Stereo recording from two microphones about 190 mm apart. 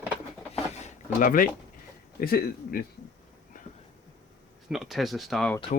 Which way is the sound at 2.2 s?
50° left (ahead or behind).